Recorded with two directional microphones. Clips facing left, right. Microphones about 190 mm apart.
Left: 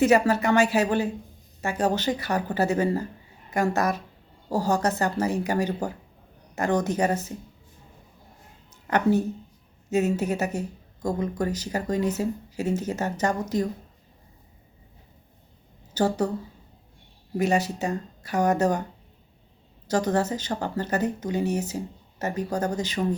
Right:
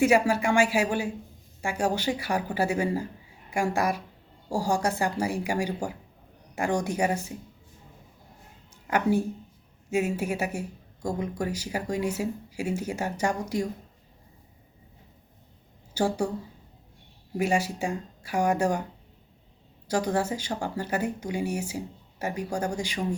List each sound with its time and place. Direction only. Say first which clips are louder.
0.0 s speech: left 2 dB; 10° right (ahead or behind)
8.7 s a woman's voice: left 2 dB; 10° right (ahead or behind)
16.0 s speech: left 2 dB; 10° right (ahead or behind)
17.3 s speech: left 2 dB; 10° right (ahead or behind)
19.9 s speech: left 2 dB; 10° right (ahead or behind)